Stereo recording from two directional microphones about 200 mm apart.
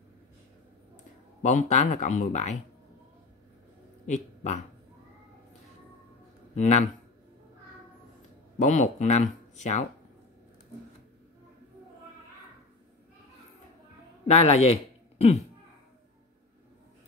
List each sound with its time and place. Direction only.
1.4 s speech: 35° left (ahead or behind)
4.0 s speech: 35° left (ahead or behind)
6.5 s speech: 35° left (ahead or behind)
8.5 s speech: 35° left (ahead or behind)
14.2 s a man's voice: 30° left (ahead or behind)